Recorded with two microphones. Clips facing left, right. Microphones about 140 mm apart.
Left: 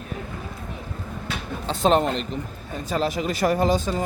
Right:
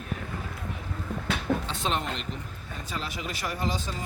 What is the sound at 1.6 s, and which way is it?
Speech, 40° left (ahead or behind).